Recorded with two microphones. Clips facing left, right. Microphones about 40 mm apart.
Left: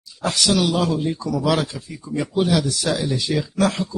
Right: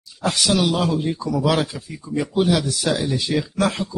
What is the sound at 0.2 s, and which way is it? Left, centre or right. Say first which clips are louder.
Speech: even; centre.